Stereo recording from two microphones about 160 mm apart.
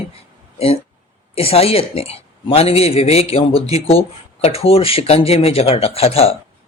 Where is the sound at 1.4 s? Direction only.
40° left (ahead or behind).